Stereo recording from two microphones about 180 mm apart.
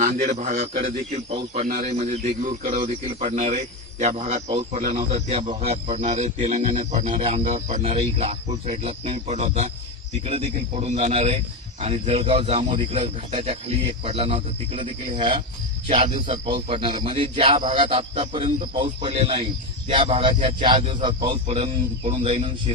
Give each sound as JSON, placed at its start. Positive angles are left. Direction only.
{"t": 0.0, "sound": "a man's voice", "side_deg": -45}
{"t": 1.6, "sound": "speech", "side_deg": -50}
{"t": 2.0, "sound": "a man's voice", "side_deg": -40}